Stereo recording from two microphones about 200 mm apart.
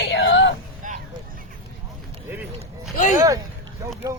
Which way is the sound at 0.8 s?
40° right (ahead or behind).